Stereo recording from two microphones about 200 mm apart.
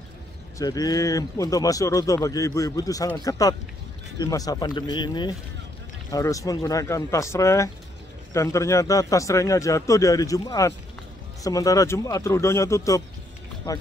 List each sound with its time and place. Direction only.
0.6 s speech: 20° left (ahead or behind)